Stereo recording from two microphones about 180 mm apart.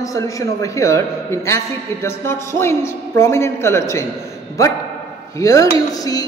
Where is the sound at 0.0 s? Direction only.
20° left (ahead or behind).